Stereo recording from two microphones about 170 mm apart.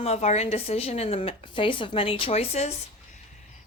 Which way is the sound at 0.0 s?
40° left (ahead or behind).